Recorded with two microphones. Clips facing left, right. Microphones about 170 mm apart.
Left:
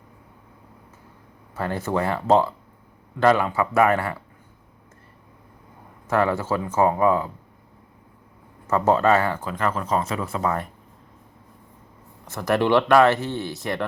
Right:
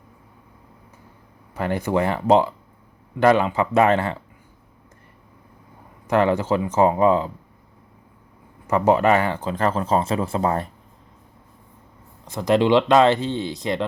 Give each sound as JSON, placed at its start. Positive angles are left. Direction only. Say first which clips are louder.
{"t": 1.5, "sound": "speech", "louder": "right 3 dB", "side_deg": -15}
{"t": 6.1, "sound": "speech", "louder": "right 3 dB", "side_deg": -20}
{"t": 8.6, "sound": "speech", "louder": "right 2 dB", "side_deg": -15}
{"t": 12.2, "sound": "speech", "louder": "right 3 dB", "side_deg": -15}